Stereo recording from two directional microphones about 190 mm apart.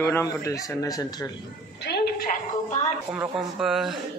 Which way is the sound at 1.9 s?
55° left (ahead or behind).